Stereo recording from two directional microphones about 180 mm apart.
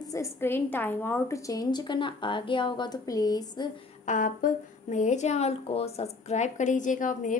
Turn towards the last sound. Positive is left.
turn(degrees=45)  # may be behind; listen again after turning